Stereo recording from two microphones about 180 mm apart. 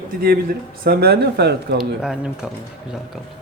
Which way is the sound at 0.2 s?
55° right (ahead or behind).